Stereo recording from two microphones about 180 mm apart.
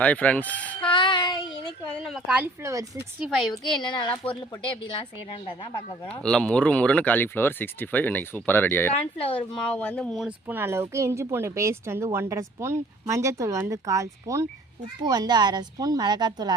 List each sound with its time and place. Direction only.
0.0 s speech: 10° left (ahead or behind)
0.8 s child singing: 25° left (ahead or behind)
1.6 s a sound: centre (ahead or behind); by 3.1 s 15° right (ahead or behind)
3.2 s a woman's voice: centre (ahead or behind)
3.8 s a woman's voice: 25° left (ahead or behind)
6.2 s speech: 5° left (ahead or behind)
9.1 s a woman's voice: 30° left (ahead or behind)
9.6 s a woman's voice: 5° left (ahead or behind); by 16.6 s 25° right (ahead or behind)